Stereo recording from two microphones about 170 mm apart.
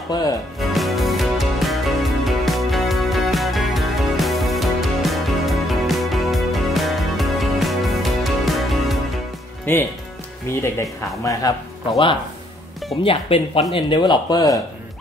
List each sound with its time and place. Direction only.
0.6 s music: centre (ahead or behind)
10.6 s speech: 20° left (ahead or behind)
13.0 s speech: 35° left (ahead or behind)